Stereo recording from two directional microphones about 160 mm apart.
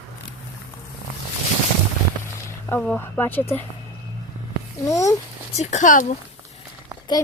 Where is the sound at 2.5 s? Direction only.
10° left (ahead or behind).